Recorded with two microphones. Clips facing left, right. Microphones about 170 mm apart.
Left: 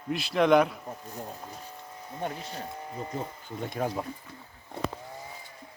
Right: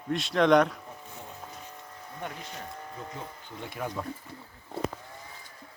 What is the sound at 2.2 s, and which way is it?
Speech, 30° left (ahead or behind).